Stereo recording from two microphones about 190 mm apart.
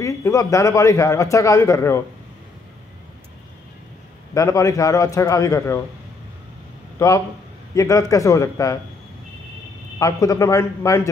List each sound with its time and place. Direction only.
0.0 s a man's voice: 15° left (ahead or behind)
4.3 s a man's voice: 15° left (ahead or behind)
7.0 s a man's voice: 15° left (ahead or behind)
9.9 s a man's voice: 15° left (ahead or behind)